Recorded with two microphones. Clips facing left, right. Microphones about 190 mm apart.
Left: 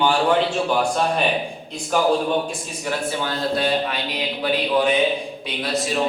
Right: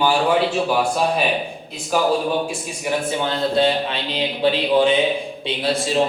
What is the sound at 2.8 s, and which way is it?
A man's voice, 20° right (ahead or behind).